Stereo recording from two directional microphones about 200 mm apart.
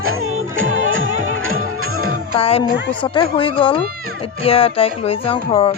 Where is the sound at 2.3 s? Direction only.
30° left (ahead or behind).